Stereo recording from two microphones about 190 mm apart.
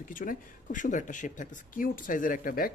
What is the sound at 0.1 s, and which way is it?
Speech, 45° left (ahead or behind).